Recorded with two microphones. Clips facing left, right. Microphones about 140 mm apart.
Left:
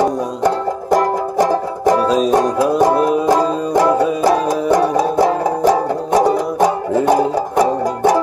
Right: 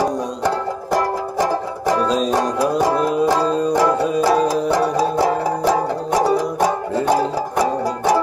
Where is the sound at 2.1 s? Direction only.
5° left (ahead or behind).